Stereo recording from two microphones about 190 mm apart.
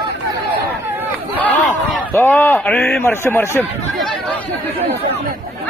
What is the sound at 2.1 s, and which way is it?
A man's voice, 10° left (ahead or behind).